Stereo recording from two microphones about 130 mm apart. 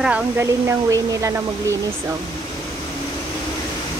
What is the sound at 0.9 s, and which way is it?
Speech, 25° right (ahead or behind).